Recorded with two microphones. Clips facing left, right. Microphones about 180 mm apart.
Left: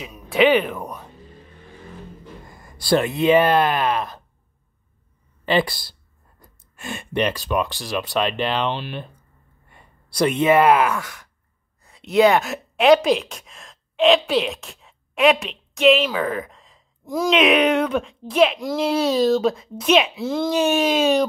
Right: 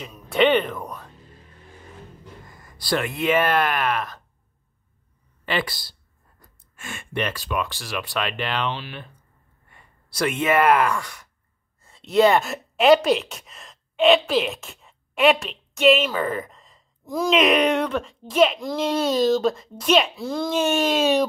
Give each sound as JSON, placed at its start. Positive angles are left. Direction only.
{"t": 0.0, "sound": "music", "side_deg": 10}
{"t": 0.3, "sound": "speech", "side_deg": 5}
{"t": 2.5, "sound": "speech", "side_deg": 30}
{"t": 5.4, "sound": "speech", "side_deg": 25}
{"t": 7.0, "sound": "speech", "side_deg": 20}
{"t": 9.7, "sound": "a sound", "side_deg": 25}
{"t": 10.5, "sound": "a woman's voice", "side_deg": 10}